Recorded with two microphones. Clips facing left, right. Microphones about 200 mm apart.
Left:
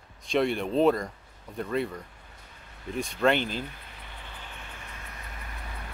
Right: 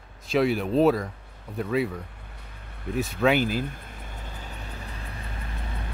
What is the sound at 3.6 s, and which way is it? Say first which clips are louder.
Vehicle: right 6 dB; 50° right (ahead or behind).